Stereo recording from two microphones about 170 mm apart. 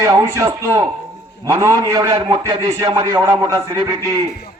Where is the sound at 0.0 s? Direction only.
20° right (ahead or behind).